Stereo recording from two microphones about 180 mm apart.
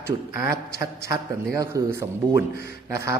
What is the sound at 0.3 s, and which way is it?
A man's voice, 15° right (ahead or behind).